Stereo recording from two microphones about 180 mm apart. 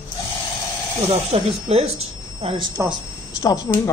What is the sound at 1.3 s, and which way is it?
Speech, 35° right (ahead or behind).